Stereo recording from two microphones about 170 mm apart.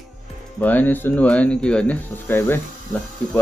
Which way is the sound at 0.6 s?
10° left (ahead or behind).